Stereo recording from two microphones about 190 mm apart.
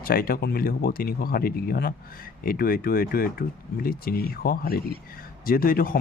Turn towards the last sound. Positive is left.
turn(degrees=50)  # may be behind; listen again after turning